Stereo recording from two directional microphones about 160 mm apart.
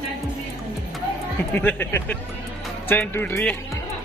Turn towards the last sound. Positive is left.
turn(degrees=15)  # may be behind; listen again after turning